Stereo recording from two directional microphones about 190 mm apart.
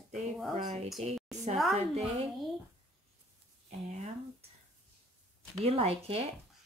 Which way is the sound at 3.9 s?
35° right (ahead or behind).